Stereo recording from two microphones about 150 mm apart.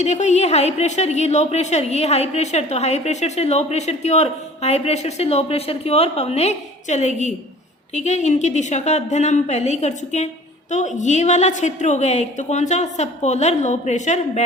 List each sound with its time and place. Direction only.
0.0 s a woman's voice: 50° left (ahead or behind)